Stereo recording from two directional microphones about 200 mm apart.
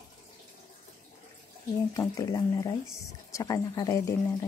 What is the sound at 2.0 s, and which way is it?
Speech, 15° left (ahead or behind).